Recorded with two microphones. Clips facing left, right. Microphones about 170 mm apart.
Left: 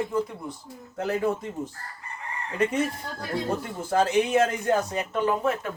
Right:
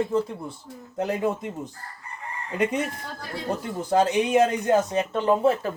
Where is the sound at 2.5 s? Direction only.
15° right (ahead or behind).